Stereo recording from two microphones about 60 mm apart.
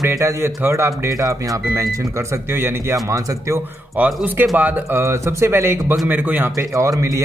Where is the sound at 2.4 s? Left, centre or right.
Right.